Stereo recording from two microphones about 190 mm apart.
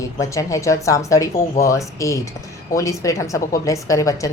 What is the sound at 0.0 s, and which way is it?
Speech, 15° left (ahead or behind).